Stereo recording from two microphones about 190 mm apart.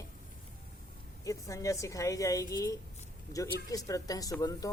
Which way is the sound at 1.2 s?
15° left (ahead or behind).